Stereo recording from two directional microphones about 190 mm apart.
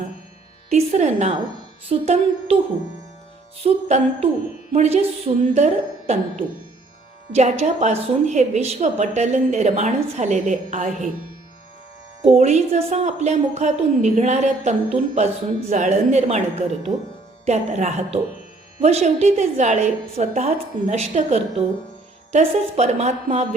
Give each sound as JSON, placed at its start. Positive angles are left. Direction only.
{"t": 0.7, "sound": "a woman's voice", "side_deg": -35}
{"t": 3.6, "sound": "a woman's voice", "side_deg": -35}
{"t": 12.2, "sound": "a woman's voice", "side_deg": -35}